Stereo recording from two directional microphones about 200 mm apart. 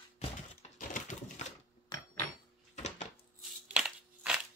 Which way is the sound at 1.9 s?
20° left (ahead or behind).